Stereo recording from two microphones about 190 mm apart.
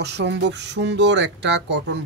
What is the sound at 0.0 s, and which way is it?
Speech, 65° right (ahead or behind).